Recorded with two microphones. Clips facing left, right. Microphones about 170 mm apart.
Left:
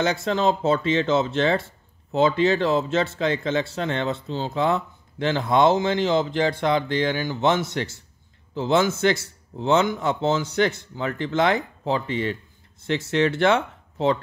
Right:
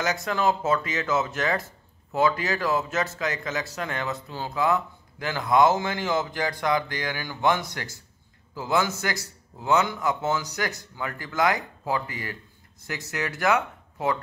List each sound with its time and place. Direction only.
0.0 s speech: 25° left (ahead or behind)